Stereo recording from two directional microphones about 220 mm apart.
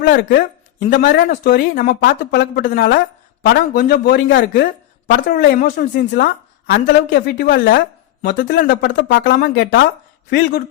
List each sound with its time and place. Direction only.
0.0 s speech: 40° left (ahead or behind)